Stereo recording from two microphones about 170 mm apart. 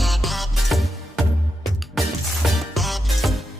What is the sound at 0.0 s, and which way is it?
Music, centre (ahead or behind).